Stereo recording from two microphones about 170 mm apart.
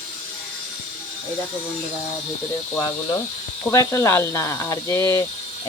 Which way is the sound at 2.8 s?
20° left (ahead or behind).